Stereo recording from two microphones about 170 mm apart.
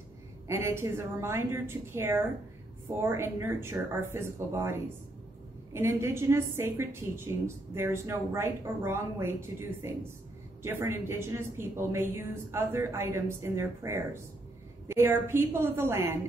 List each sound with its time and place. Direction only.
0.5 s a woman's voice: 15° right (ahead or behind)